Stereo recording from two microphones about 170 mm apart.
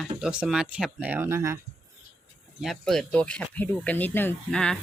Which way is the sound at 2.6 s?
Centre (ahead or behind).